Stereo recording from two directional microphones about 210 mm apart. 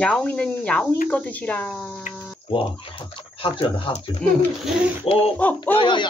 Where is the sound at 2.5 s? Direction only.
25° left (ahead or behind).